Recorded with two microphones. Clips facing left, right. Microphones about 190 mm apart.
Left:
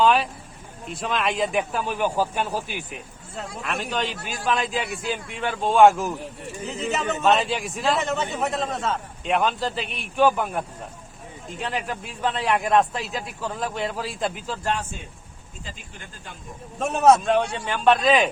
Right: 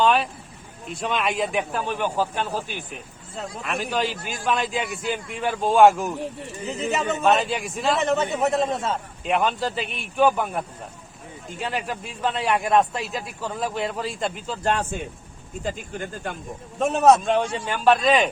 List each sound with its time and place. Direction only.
0.0 s vehicle: centre (ahead or behind)
0.9 s speech: centre (ahead or behind)
3.3 s speech: centre (ahead or behind)
15.6 s speech: 55° right (ahead or behind)
16.8 s speech: centre (ahead or behind)